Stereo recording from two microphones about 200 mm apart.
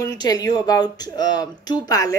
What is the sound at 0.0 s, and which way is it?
Speech, 20° left (ahead or behind).